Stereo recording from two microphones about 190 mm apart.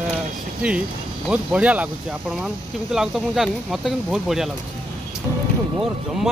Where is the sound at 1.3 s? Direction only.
5° right (ahead or behind).